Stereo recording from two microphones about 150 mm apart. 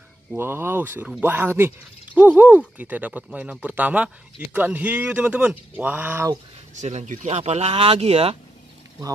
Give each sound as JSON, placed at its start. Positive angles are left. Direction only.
{"t": 0.4, "sound": "speech", "side_deg": -15}
{"t": 6.8, "sound": "speech", "side_deg": -50}